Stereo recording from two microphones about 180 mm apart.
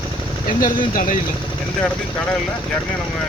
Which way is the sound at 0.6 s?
50° left (ahead or behind).